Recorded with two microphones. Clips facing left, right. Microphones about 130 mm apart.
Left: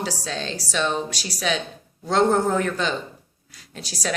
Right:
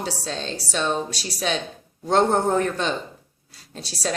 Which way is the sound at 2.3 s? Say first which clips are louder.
Right 1 dB; 35° right (ahead or behind).